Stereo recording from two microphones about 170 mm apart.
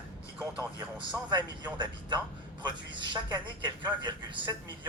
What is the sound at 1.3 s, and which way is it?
A man's voice, 25° right (ahead or behind).